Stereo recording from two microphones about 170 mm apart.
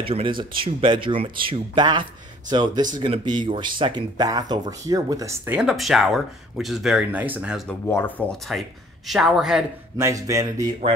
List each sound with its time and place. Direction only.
0.0 s speech: 30° right (ahead or behind); by 7.6 s 10° right (ahead or behind)
7.8 s a man's voice: 15° left (ahead or behind); by 9.7 s 5° right (ahead or behind)
9.9 s speech: 20° right (ahead or behind)